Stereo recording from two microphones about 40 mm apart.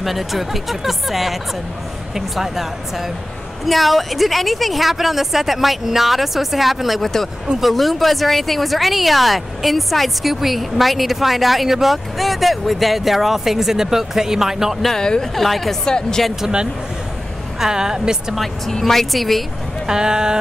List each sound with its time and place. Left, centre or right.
0.0 s speech: centre
7.0 s speech: centre
15.0 s speech: centre
15.3 s speech: centre
15.8 s speech: centre
16.3 s speech: centre
18.7 s speech: centre
19.9 s speech: centre